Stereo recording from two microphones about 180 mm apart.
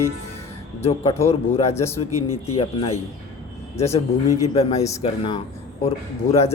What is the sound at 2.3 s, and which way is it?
Speech, 30° left (ahead or behind).